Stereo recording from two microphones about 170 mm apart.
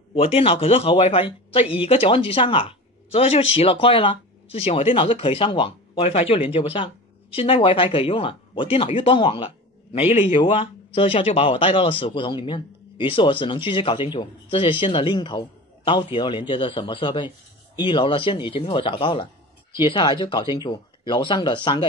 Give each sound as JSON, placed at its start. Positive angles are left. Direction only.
{"t": 0.1, "sound": "speech", "side_deg": 35}